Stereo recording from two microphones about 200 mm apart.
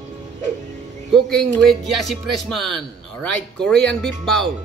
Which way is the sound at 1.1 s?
5° left (ahead or behind).